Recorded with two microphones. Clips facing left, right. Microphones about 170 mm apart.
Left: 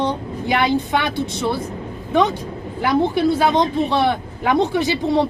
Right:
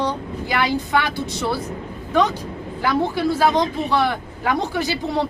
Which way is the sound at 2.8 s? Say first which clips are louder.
Left 3 dB; 20° left (ahead or behind).